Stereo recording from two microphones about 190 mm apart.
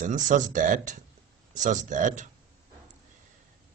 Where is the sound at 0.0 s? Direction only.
40° right (ahead or behind).